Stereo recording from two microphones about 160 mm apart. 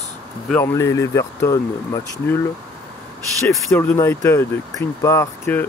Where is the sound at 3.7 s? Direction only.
15° left (ahead or behind).